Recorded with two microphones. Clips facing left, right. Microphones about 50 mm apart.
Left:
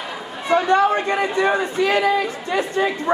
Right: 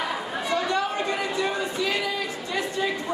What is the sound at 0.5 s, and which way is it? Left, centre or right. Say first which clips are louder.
A man's voice: left 10 dB; left.